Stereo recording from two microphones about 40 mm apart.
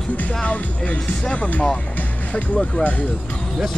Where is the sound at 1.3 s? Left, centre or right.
Left.